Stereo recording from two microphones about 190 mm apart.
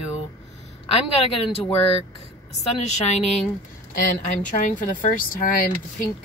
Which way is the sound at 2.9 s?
35° left (ahead or behind).